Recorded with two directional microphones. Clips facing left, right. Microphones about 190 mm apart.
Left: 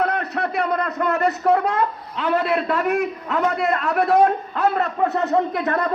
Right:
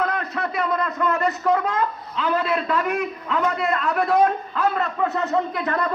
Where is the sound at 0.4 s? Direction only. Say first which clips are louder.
Left 1 dB; 45° left (ahead or behind).